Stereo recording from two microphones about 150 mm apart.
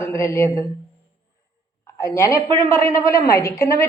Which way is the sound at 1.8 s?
20° left (ahead or behind).